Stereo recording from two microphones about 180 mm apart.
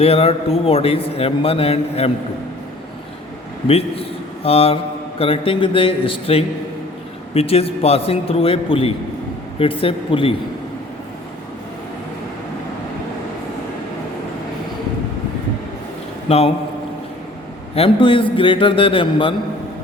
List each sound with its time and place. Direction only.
0.0 s a man's voice: 35° left (ahead or behind)
3.7 s a man's voice: 35° left (ahead or behind)
16.3 s a man's voice: 35° left (ahead or behind)
17.7 s a man's voice: 30° left (ahead or behind)